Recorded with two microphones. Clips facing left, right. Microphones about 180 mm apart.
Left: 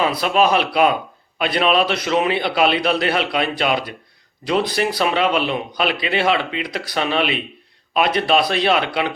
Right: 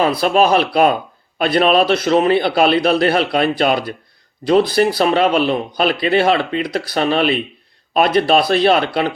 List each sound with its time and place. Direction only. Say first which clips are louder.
0.0 s a man's voice: right 3 dB; 40° right (ahead or behind)